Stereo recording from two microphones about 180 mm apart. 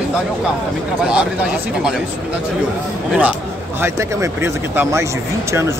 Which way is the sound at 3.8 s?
15° right (ahead or behind).